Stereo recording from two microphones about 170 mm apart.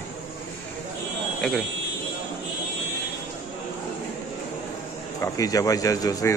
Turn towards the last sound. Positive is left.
turn(degrees=20)  # may be behind; listen again after turning